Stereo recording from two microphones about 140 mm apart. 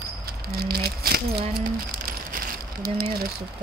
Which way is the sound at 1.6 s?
90° right.